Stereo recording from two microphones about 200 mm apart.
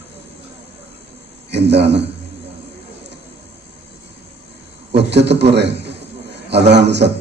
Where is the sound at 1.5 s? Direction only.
60° right (ahead or behind).